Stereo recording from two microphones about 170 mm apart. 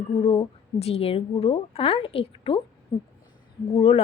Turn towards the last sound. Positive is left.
turn(degrees=35)  # may be behind; listen again after turning